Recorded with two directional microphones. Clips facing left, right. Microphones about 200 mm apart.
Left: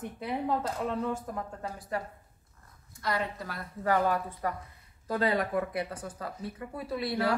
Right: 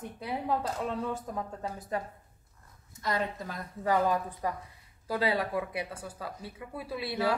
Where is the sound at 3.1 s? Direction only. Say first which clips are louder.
Even; 20° right (ahead or behind).